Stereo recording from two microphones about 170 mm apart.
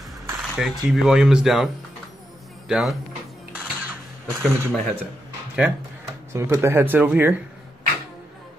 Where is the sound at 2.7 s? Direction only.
Centre (ahead or behind).